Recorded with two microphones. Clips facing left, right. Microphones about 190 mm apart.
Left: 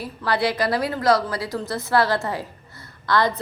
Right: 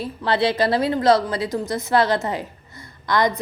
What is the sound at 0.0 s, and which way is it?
A woman's voice, 25° right (ahead or behind).